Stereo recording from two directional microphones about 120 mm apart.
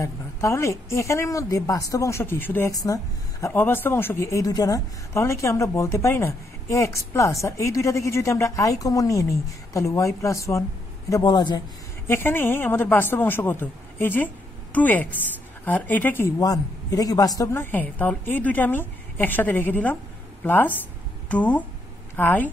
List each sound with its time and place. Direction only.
0.0 s a woman's voice: 25° left (ahead or behind)
2.7 s a woman's voice: 30° left (ahead or behind)
12.1 s a woman's voice: 15° left (ahead or behind)
16.3 s a woman's voice: 30° left (ahead or behind)